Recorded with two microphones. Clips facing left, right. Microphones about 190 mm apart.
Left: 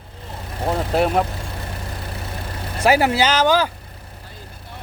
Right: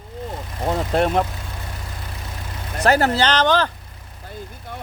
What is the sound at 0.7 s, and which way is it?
Vehicle, 5° left (ahead or behind).